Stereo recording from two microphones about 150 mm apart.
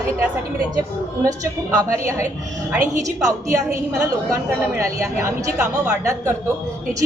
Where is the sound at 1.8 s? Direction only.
20° right (ahead or behind).